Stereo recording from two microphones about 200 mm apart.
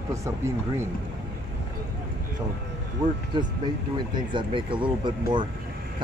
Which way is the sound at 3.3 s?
20° right (ahead or behind).